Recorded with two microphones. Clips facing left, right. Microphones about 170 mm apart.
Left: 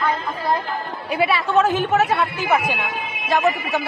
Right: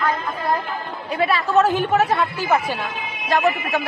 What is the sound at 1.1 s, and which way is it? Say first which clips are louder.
Speech: even; 5° left (ahead or behind).